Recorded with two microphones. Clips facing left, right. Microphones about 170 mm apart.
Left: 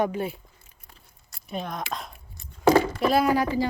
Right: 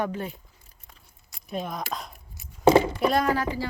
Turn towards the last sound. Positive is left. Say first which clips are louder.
# left 3 dB
turn(degrees=15)  # may be behind; listen again after turning